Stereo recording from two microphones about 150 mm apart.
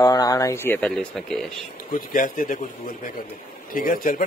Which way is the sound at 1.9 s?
65° left (ahead or behind).